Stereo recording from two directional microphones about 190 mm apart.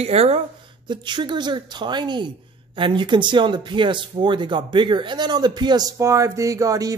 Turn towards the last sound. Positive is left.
turn(degrees=-15)  # may be behind; listen again after turning